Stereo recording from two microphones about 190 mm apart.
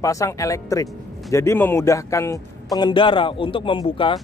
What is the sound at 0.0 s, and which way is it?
Speech, 15° left (ahead or behind).